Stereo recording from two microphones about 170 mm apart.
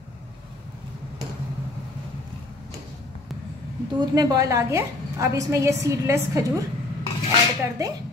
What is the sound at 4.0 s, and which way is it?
A woman's voice, 20° right (ahead or behind).